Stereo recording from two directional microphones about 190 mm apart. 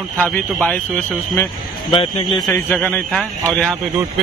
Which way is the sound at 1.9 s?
25° left (ahead or behind).